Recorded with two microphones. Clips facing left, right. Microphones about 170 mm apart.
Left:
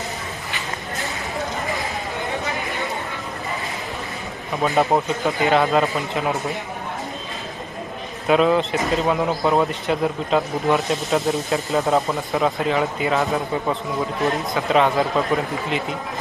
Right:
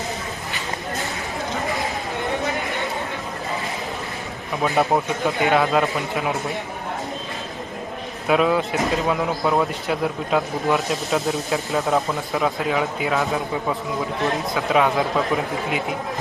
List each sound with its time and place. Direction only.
4.6 s speech: centre (ahead or behind)
8.3 s speech: 5° right (ahead or behind)